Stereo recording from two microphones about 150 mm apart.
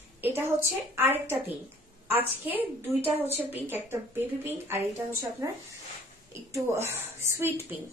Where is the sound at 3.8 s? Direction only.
15° right (ahead or behind).